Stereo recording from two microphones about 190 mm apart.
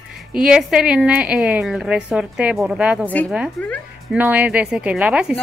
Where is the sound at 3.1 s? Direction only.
10° left (ahead or behind).